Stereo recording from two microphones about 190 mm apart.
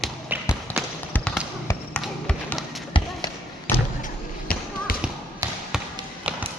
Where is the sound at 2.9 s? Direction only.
30° left (ahead or behind).